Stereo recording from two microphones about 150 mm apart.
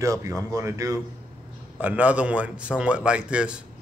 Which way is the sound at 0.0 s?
20° right (ahead or behind).